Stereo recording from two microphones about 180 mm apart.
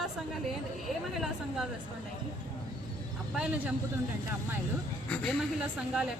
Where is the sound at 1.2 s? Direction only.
Centre (ahead or behind).